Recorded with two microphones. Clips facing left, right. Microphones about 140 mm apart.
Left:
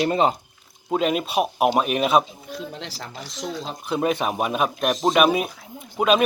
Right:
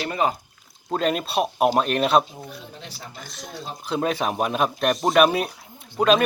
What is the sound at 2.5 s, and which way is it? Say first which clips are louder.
Speech: left 7 dB; 90° left.